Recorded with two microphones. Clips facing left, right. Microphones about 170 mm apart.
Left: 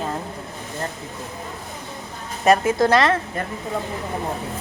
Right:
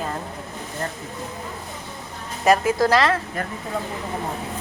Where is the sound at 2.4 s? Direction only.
25° left (ahead or behind).